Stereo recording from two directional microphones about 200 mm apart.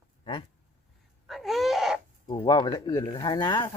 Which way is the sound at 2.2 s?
20° left (ahead or behind).